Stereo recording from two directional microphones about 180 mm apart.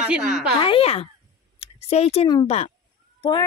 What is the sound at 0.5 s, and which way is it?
Speech, 30° left (ahead or behind).